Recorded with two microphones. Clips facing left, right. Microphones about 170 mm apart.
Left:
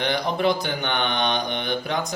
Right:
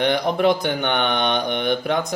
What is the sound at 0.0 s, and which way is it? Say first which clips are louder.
Mantra: right 4 dB; 60° right (ahead or behind).